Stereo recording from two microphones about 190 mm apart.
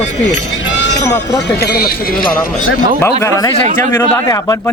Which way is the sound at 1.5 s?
55° left (ahead or behind).